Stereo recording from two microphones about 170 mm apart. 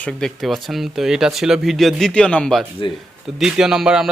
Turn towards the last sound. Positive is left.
turn(degrees=-5)  # may be behind; listen again after turning